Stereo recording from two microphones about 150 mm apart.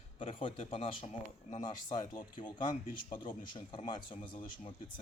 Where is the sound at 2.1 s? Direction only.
30° left (ahead or behind).